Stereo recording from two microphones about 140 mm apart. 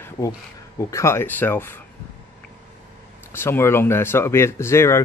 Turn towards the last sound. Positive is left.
turn(degrees=20)  # may be behind; listen again after turning